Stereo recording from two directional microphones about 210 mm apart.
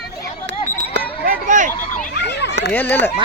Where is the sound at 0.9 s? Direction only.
40° right (ahead or behind).